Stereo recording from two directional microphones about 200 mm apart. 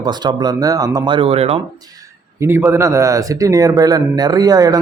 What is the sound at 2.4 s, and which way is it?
Speech, 10° right (ahead or behind).